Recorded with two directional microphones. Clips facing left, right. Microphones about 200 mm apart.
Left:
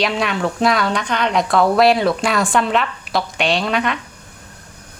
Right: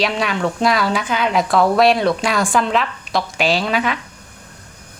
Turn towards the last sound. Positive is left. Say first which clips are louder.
# even
turn(degrees=0)  # may be behind; listen again after turning